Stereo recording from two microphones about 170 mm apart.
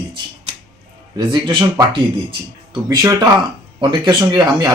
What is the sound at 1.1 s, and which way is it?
Speech, 25° right (ahead or behind).